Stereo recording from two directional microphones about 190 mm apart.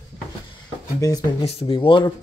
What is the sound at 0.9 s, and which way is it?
Speech, 20° left (ahead or behind).